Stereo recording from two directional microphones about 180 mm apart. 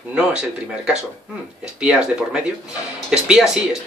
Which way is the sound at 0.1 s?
5° right (ahead or behind).